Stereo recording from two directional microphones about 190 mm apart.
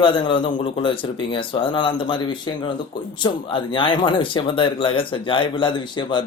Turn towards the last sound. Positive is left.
turn(degrees=25)  # may be behind; listen again after turning